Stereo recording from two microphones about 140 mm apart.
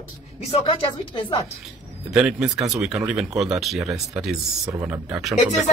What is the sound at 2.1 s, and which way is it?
Speech, 5° right (ahead or behind).